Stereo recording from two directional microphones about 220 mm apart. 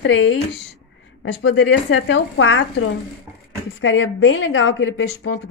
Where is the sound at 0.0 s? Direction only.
55° left (ahead or behind).